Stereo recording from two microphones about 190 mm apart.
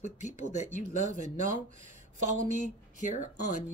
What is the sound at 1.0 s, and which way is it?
Speech, 40° right (ahead or behind).